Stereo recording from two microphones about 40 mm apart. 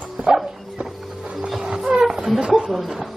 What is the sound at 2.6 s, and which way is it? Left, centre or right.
Speech, centre.